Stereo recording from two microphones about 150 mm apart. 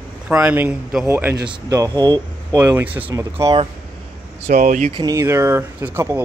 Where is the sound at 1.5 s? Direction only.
25° right (ahead or behind).